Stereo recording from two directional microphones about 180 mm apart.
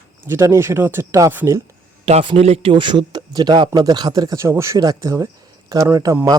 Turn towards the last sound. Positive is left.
turn(degrees=-20)  # may be behind; listen again after turning